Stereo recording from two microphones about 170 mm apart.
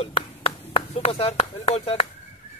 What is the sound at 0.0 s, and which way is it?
Speech, 35° left (ahead or behind).